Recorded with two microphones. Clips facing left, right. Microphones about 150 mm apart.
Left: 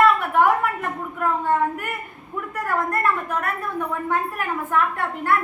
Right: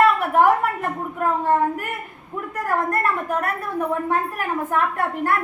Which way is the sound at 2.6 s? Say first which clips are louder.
Right 1 dB; 40° right (ahead or behind).